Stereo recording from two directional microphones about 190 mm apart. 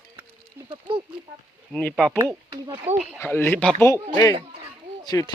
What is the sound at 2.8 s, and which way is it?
Speech, 5° right (ahead or behind).